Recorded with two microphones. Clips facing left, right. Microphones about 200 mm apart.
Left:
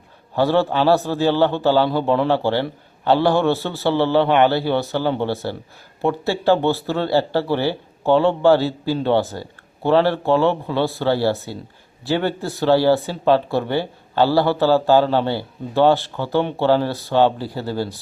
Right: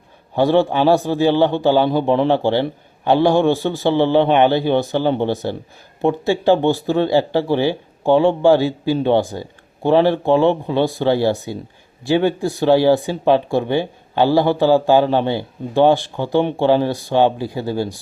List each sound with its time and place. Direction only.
0.3 s speech: 15° right (ahead or behind)